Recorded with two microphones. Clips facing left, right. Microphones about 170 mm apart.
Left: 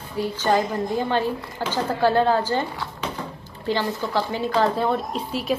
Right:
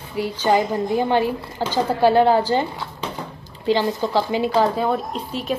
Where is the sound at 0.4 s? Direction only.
15° right (ahead or behind).